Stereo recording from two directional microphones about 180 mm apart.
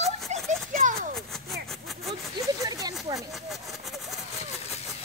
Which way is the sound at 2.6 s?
20° right (ahead or behind).